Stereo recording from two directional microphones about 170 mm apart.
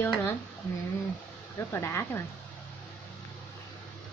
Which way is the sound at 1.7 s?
15° left (ahead or behind).